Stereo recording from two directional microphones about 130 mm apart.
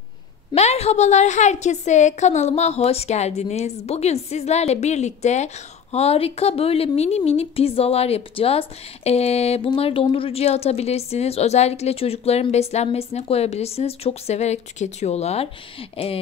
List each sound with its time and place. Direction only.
0.6 s a woman's voice: 55° left (ahead or behind)